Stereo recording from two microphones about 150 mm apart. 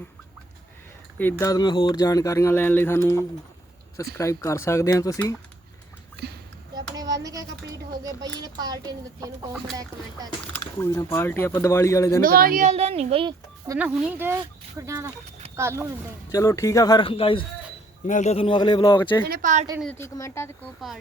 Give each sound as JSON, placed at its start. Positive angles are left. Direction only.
{"t": 1.2, "sound": "speech", "side_deg": 10}
{"t": 1.5, "sound": "speech", "side_deg": 25}
{"t": 6.9, "sound": "a child's voice", "side_deg": -25}
{"t": 10.8, "sound": "speech", "side_deg": 20}
{"t": 12.2, "sound": "speech", "side_deg": -75}
{"t": 12.6, "sound": "a woman's voice", "side_deg": -45}
{"t": 13.7, "sound": "speech", "side_deg": -10}
{"t": 16.3, "sound": "speech", "side_deg": 20}
{"t": 18.0, "sound": "speech", "side_deg": 50}
{"t": 19.3, "sound": "speech", "side_deg": -60}
{"t": 20.0, "sound": "speech", "side_deg": 20}